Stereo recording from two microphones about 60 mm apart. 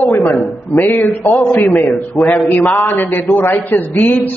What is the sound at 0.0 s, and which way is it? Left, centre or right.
A man's voice, left.